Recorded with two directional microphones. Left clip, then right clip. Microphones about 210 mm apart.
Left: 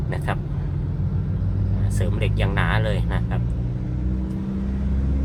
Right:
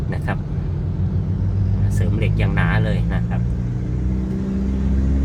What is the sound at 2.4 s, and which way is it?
Speech, 15° left (ahead or behind).